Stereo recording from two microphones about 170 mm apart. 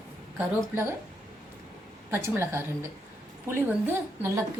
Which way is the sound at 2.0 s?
15° right (ahead or behind).